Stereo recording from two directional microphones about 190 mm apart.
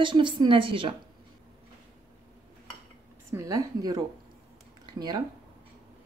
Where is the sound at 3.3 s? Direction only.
20° right (ahead or behind).